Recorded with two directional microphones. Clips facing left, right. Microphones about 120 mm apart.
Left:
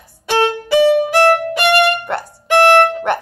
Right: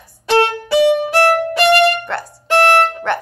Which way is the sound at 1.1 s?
15° left (ahead or behind).